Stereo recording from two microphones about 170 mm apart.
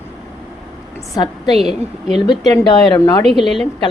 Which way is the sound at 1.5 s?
Centre (ahead or behind).